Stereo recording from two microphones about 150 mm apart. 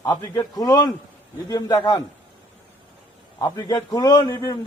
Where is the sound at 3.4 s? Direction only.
25° left (ahead or behind).